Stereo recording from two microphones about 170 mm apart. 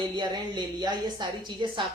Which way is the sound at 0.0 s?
25° right (ahead or behind).